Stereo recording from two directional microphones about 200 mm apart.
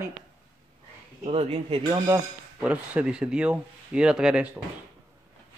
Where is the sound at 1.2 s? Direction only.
30° right (ahead or behind).